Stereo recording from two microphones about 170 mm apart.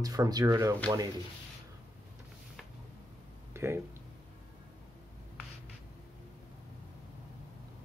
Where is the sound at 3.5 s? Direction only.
15° right (ahead or behind).